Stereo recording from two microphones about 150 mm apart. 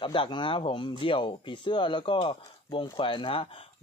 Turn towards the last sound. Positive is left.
turn(degrees=35)  # may be behind; listen again after turning